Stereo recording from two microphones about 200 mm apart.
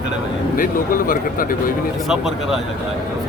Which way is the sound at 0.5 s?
45° left (ahead or behind).